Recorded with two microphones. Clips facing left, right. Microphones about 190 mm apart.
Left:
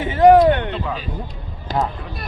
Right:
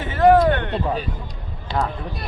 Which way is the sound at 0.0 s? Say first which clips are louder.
Left 3 dB; 15° left (ahead or behind).